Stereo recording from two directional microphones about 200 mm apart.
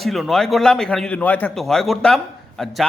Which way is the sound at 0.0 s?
Centre (ahead or behind).